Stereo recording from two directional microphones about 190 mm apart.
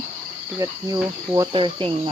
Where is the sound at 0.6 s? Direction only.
20° right (ahead or behind).